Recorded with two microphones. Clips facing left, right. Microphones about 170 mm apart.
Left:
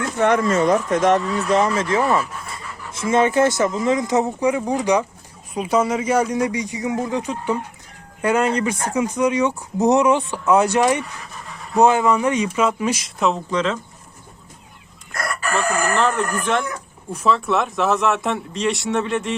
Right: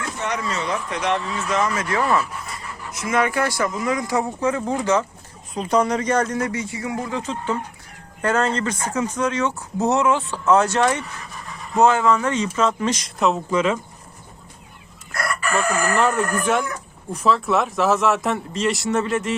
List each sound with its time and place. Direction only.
0.2 s speech: 50° left (ahead or behind); by 13.7 s 5° right (ahead or behind)
15.7 s speech: 10° right (ahead or behind)